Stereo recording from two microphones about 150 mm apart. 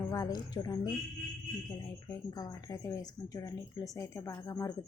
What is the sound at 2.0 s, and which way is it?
Speech, 25° left (ahead or behind).